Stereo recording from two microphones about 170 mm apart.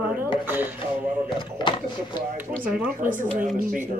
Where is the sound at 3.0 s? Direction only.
50° right (ahead or behind).